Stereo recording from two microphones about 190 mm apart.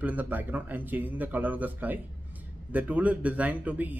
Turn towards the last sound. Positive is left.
turn(degrees=-10)  # may be behind; listen again after turning